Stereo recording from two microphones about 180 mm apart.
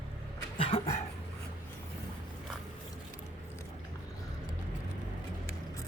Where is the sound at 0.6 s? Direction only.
35° left (ahead or behind).